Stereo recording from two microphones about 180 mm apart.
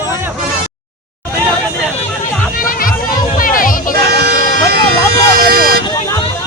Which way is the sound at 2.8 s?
50° left (ahead or behind).